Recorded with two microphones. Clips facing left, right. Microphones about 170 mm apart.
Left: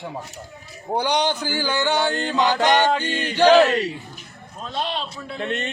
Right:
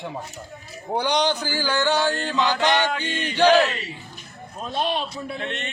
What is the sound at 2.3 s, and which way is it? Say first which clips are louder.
Music: left 4 dB; 40° left (ahead or behind).